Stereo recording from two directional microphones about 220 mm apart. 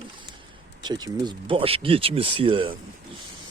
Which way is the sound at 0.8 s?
20° right (ahead or behind).